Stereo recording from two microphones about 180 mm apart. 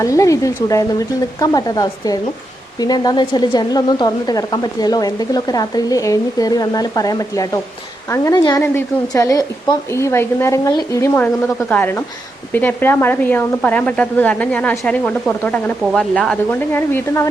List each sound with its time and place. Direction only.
0.0 s a woman's voice: 15° left (ahead or behind)